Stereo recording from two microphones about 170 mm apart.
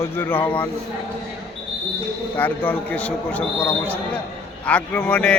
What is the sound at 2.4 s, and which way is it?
A man's voice, 10° left (ahead or behind).